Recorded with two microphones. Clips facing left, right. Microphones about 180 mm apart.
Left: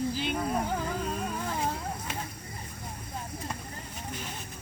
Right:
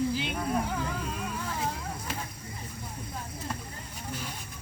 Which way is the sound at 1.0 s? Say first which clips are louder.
Left 3 dB; 40° left (ahead or behind).